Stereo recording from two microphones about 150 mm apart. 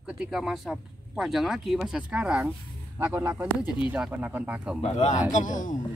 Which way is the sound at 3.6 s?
35° left (ahead or behind).